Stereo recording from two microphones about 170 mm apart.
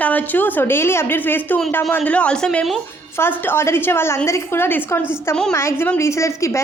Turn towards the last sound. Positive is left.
turn(degrees=15)  # may be behind; listen again after turning